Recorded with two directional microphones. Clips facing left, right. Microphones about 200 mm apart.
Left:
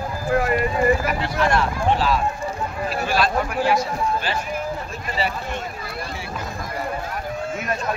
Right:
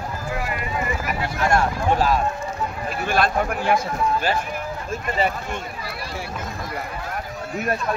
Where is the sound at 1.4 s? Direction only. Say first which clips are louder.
Right 1 dB; 50° right (ahead or behind).